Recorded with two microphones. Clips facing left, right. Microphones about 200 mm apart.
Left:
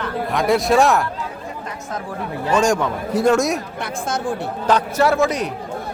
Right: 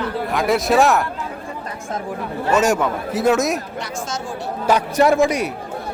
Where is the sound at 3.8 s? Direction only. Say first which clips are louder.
Left 2 dB; 55° left (ahead or behind).